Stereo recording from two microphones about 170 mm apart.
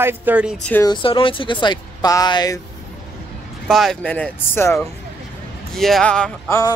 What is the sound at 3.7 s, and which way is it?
Speech, centre (ahead or behind).